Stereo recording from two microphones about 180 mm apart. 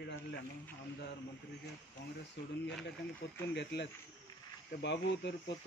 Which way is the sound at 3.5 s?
70° left (ahead or behind).